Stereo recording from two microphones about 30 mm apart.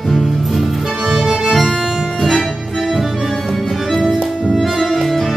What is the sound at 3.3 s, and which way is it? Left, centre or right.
Music, centre.